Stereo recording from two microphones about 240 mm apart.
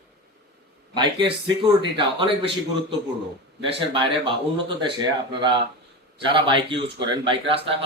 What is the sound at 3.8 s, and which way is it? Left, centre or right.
A man's voice, right.